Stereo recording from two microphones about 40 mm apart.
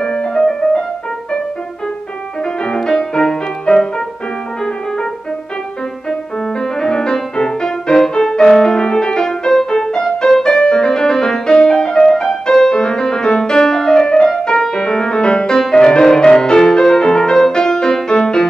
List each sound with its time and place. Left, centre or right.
0.0 s music: centre
2.6 s music: centre
6.6 s music: centre